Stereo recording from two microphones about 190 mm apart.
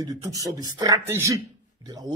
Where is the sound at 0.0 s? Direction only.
20° right (ahead or behind).